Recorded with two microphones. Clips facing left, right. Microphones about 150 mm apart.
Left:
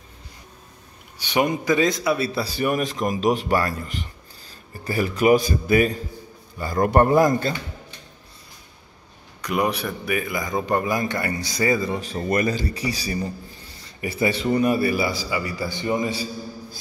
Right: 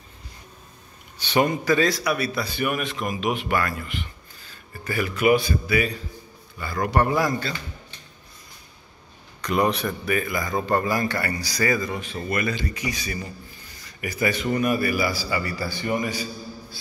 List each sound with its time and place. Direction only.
1.1 s a man's voice: 15° left (ahead or behind); by 7.5 s 45° left (ahead or behind)
9.4 s a man's voice: 10° left (ahead or behind); by 16.3 s 25° left (ahead or behind)